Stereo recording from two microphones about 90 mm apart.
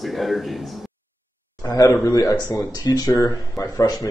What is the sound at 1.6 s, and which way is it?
Speech, 40° left (ahead or behind).